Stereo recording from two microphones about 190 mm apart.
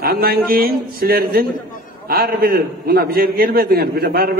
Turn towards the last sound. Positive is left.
turn(degrees=-55)  # may be behind; listen again after turning